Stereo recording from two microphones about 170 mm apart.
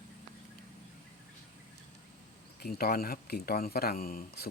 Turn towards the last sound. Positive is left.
turn(degrees=60)  # may be behind; listen again after turning